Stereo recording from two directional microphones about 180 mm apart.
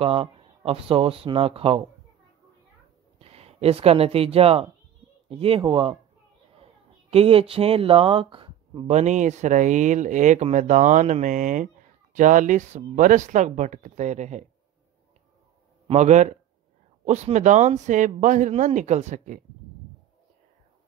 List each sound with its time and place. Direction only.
0.0 s a woman's voice: 35° right (ahead or behind)
3.2 s a woman's voice: 35° right (ahead or behind)
15.9 s a woman's voice: 40° right (ahead or behind)